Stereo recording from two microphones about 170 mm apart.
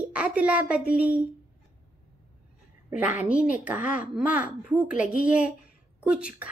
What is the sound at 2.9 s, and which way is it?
Speech, 10° right (ahead or behind).